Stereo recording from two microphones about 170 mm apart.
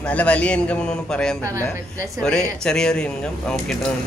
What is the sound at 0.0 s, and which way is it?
A man's voice, 5° left (ahead or behind).